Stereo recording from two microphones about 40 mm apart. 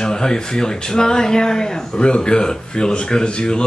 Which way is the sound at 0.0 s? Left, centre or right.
Centre.